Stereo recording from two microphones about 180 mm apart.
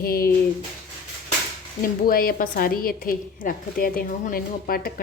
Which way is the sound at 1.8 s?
55° left (ahead or behind).